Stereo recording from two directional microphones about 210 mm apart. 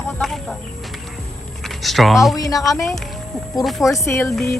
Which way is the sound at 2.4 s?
15° left (ahead or behind).